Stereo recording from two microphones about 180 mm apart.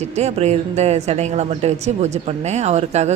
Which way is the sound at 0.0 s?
40° right (ahead or behind).